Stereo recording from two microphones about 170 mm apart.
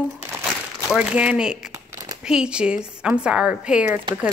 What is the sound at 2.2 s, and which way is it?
Speech, 5° right (ahead or behind).